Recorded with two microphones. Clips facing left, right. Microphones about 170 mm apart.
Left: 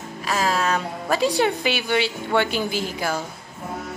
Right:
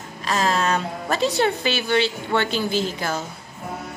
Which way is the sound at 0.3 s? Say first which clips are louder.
Right 1 dB; 5° left (ahead or behind).